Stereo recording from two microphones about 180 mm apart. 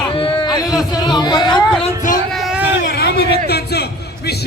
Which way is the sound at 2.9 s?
60° left (ahead or behind).